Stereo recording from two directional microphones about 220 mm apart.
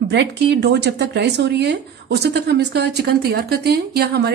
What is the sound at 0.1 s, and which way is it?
Speech, 50° right (ahead or behind).